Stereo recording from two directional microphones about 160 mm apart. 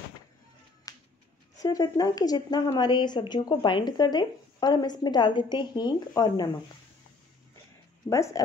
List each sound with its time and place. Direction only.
0.9 s music: 20° left (ahead or behind)
1.6 s speech: 20° left (ahead or behind)
8.1 s speech: 20° left (ahead or behind)